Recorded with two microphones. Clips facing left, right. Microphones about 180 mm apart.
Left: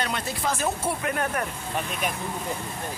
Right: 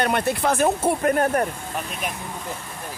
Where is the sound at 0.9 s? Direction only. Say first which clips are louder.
Right 8 dB; 40° right (ahead or behind).